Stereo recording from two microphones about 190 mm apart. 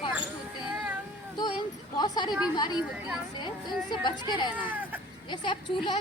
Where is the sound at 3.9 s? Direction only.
25° left (ahead or behind).